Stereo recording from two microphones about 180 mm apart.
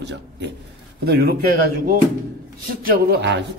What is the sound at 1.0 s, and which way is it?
Speech, 65° right (ahead or behind).